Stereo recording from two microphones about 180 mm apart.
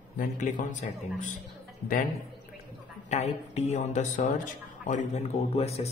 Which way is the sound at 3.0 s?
40° left (ahead or behind).